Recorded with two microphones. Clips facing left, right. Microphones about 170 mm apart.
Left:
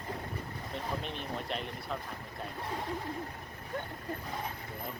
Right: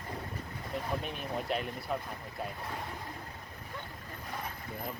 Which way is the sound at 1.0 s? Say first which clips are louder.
Right 2 dB; 5° right (ahead or behind).